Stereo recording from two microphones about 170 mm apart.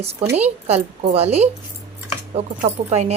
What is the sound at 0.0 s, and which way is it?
Speech, 35° right (ahead or behind).